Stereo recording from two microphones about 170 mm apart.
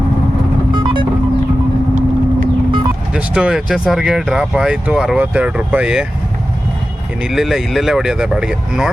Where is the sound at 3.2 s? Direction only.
5° right (ahead or behind).